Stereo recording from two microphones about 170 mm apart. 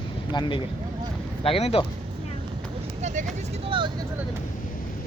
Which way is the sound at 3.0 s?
50° right (ahead or behind).